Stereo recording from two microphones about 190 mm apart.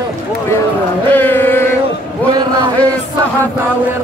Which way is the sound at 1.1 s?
10° left (ahead or behind).